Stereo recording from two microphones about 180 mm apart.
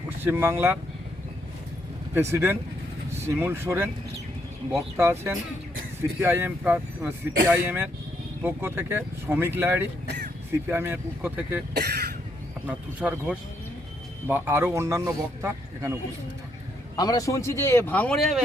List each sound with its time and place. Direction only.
0.2 s a man's voice: 10° right (ahead or behind)
2.1 s a man's voice: 10° right (ahead or behind)
4.9 s a man's voice: 15° right (ahead or behind)
11.7 s speech: 65° right (ahead or behind)
12.6 s a man's voice: 5° right (ahead or behind)
17.0 s speech: 20° left (ahead or behind); by 18.4 s centre (ahead or behind)